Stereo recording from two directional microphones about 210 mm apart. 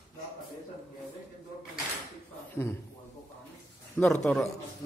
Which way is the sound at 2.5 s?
10° left (ahead or behind).